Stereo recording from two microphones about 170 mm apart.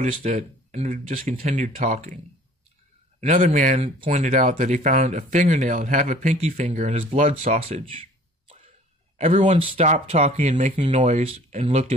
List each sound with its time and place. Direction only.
0.0 s speech: 45° right (ahead or behind)
3.2 s speech: 50° right (ahead or behind)
9.2 s speech: 40° right (ahead or behind)